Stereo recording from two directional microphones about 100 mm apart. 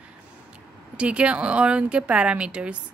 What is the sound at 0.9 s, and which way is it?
A woman's voice, 10° right (ahead or behind).